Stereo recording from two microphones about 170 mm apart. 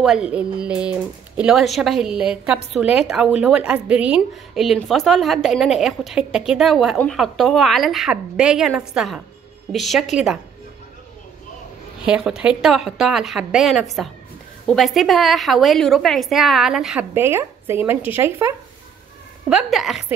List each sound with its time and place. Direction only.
0.0 s speech: 5° right (ahead or behind)
12.1 s speech: 5° right (ahead or behind)
19.5 s speech: centre (ahead or behind)